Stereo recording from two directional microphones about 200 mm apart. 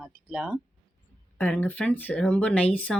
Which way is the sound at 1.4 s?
10° left (ahead or behind).